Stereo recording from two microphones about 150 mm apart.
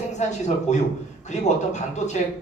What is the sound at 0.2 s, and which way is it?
Speech, 50° left (ahead or behind).